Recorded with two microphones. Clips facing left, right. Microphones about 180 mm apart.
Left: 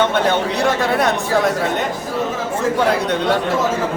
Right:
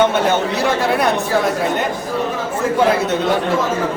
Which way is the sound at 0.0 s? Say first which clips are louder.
Right 1 dB; 5° right (ahead or behind).